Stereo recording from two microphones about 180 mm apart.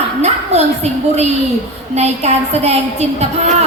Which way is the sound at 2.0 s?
35° right (ahead or behind).